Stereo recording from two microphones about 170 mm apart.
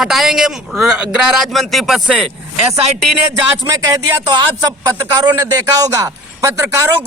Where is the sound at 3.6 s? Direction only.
20° right (ahead or behind).